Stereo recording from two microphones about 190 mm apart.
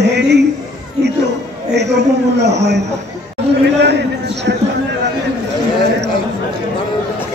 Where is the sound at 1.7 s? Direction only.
65° right (ahead or behind).